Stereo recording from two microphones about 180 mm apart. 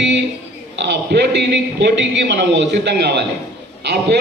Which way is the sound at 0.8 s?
75° right (ahead or behind).